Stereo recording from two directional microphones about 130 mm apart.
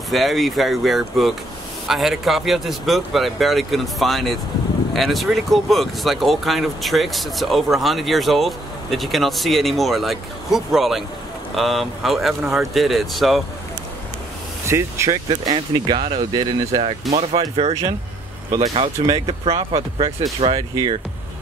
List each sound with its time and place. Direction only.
0.1 s speech: centre (ahead or behind)
14.6 s speech: 20° right (ahead or behind)
15.2 s speech: 30° right (ahead or behind)
17.1 s speech: 55° right (ahead or behind)
18.8 s speech: 50° right (ahead or behind)
20.7 s speech: 35° right (ahead or behind)